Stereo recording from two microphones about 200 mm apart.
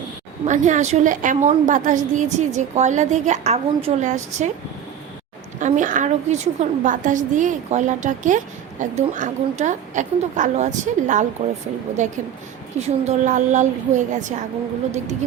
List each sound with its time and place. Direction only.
0.4 s a woman's voice: 40° right (ahead or behind)
5.5 s a woman's voice: 40° right (ahead or behind)